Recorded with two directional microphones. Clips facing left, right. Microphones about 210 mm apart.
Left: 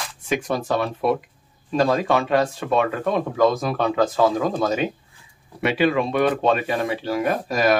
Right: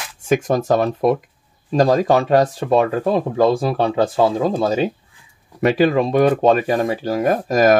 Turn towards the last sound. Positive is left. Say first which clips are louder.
# right 6 dB
turn(degrees=-45)  # may be behind; listen again after turning